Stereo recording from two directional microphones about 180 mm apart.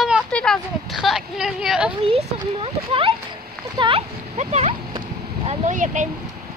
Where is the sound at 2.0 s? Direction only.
30° right (ahead or behind).